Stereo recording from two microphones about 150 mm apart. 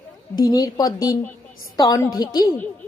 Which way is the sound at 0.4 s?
25° left (ahead or behind).